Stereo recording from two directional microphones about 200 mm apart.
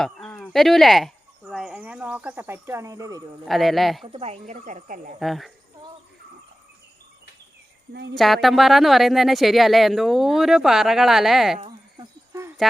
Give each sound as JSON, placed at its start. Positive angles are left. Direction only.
{"t": 0.0, "sound": "speech", "side_deg": 0}
{"t": 3.4, "sound": "speech", "side_deg": 0}
{"t": 4.0, "sound": "speech", "side_deg": -30}
{"t": 5.2, "sound": "speech", "side_deg": 0}
{"t": 8.1, "sound": "speech", "side_deg": 0}
{"t": 11.6, "sound": "cricket", "side_deg": -20}